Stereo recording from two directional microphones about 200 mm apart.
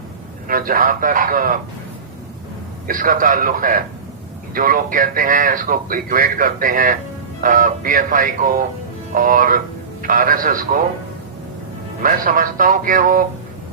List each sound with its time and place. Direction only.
0.4 s speech: 45° right (ahead or behind)
2.8 s speech: 45° right (ahead or behind)
12.0 s speech: 45° right (ahead or behind)